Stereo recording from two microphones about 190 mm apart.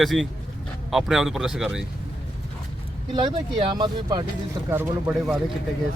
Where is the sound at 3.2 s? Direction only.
25° right (ahead or behind).